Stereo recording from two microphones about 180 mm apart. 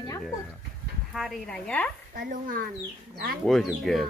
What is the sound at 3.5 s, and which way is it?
Speech, centre (ahead or behind).